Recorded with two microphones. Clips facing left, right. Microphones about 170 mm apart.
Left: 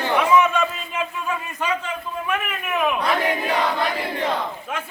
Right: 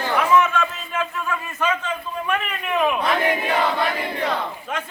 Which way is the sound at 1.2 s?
15° left (ahead or behind).